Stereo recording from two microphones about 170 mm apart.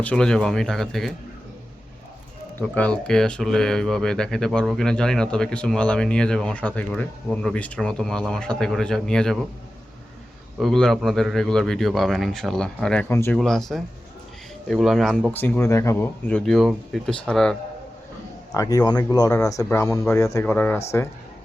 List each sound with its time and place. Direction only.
0.0 s speech: 5° left (ahead or behind)
2.6 s speech: 10° left (ahead or behind)
10.6 s speech: 5° left (ahead or behind)
13.3 s speech: centre (ahead or behind)
15.3 s speech: 10° left (ahead or behind)
18.5 s speech: 20° left (ahead or behind)